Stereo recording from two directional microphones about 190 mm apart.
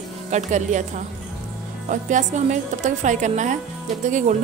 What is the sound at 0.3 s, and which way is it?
A woman's voice, 40° right (ahead or behind).